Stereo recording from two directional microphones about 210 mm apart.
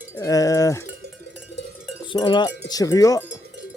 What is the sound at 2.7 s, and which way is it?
Cowbell, 15° left (ahead or behind).